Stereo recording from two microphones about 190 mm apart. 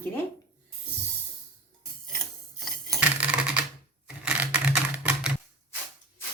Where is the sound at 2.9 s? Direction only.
5° right (ahead or behind).